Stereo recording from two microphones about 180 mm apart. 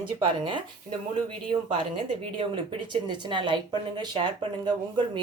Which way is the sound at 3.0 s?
25° right (ahead or behind).